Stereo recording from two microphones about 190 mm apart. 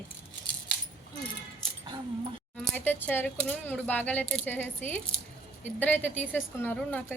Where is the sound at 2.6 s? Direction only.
10° left (ahead or behind).